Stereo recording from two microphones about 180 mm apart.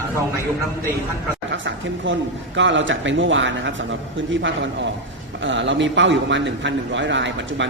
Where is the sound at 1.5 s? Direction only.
90° right.